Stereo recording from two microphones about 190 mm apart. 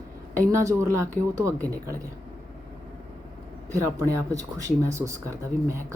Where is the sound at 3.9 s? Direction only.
15° right (ahead or behind).